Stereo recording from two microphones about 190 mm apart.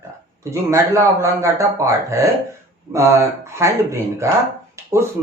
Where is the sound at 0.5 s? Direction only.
15° right (ahead or behind).